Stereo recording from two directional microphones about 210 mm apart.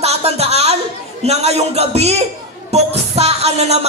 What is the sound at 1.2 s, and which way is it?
Music, 30° right (ahead or behind).